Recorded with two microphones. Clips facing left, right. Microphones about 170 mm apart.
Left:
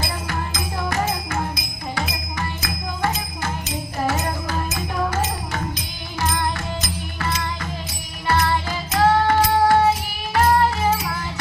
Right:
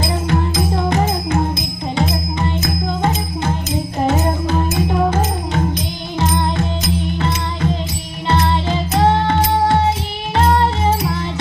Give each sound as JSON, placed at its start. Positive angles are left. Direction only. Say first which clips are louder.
{"t": 0.3, "sound": "music", "louder": "right 9 dB", "side_deg": -20}
{"t": 6.1, "sound": "music", "louder": "right 5 dB", "side_deg": -20}